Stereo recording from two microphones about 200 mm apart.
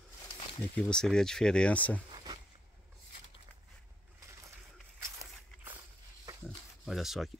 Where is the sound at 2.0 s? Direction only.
25° right (ahead or behind).